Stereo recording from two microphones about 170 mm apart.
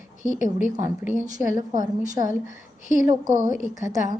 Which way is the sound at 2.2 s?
50° left (ahead or behind).